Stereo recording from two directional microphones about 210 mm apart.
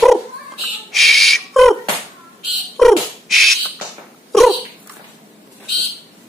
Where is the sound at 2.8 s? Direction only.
Centre (ahead or behind).